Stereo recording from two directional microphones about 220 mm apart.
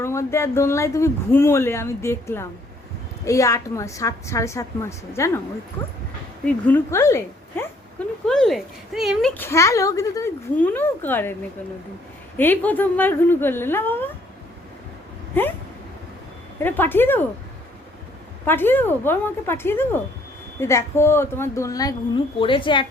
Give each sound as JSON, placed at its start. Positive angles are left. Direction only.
{"t": 0.0, "sound": "speech", "side_deg": 10}
{"t": 6.4, "sound": "speech", "side_deg": 10}
{"t": 12.4, "sound": "speech", "side_deg": 10}
{"t": 16.6, "sound": "speech", "side_deg": 10}
{"t": 18.4, "sound": "speech", "side_deg": 10}